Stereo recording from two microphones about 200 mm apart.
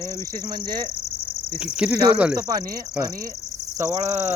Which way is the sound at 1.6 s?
5° right (ahead or behind).